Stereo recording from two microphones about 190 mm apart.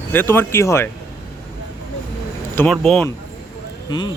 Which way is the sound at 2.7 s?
5° left (ahead or behind).